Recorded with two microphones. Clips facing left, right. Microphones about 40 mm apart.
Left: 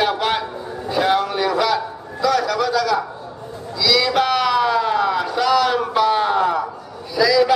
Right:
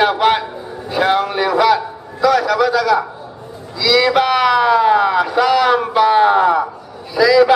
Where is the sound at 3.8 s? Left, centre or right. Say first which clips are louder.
Right 4 dB; centre.